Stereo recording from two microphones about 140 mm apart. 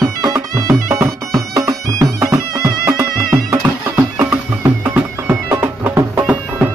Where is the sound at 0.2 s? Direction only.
25° right (ahead or behind).